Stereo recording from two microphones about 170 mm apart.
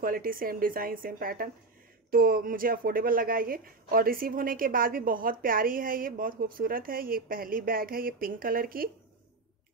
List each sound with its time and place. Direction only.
0.0 s speech: 55° right (ahead or behind)